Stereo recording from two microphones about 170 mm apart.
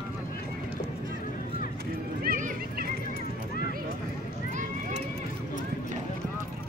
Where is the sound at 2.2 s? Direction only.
55° right (ahead or behind).